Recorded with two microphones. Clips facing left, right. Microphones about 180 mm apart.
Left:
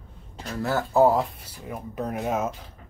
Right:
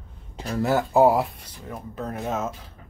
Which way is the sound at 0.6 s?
15° right (ahead or behind).